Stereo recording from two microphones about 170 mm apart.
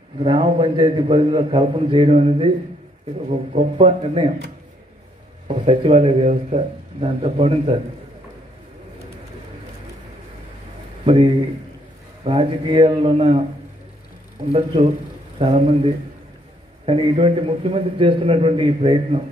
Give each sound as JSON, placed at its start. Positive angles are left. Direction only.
{"t": 0.2, "sound": "a man's voice", "side_deg": -30}
{"t": 5.5, "sound": "a man's voice", "side_deg": -35}
{"t": 12.3, "sound": "a man's voice", "side_deg": -30}
{"t": 14.5, "sound": "a man's voice", "side_deg": -35}